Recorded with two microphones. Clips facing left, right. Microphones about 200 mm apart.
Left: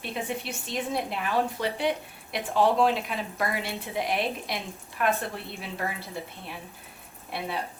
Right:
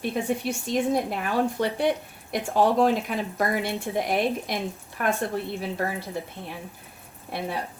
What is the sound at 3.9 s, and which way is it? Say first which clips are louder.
Speech: right 3 dB; 45° right (ahead or behind).